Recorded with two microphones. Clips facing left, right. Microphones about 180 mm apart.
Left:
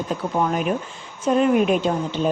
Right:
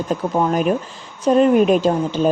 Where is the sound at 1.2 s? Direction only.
35° right (ahead or behind).